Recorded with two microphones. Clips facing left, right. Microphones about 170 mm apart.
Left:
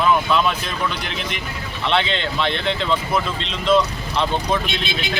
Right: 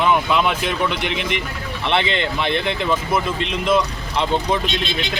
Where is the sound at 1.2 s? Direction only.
65° right (ahead or behind).